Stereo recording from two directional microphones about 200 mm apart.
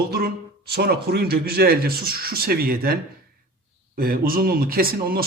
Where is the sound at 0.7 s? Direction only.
50° right (ahead or behind).